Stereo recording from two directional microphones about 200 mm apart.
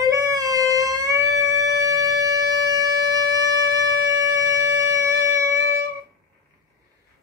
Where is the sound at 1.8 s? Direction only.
15° right (ahead or behind).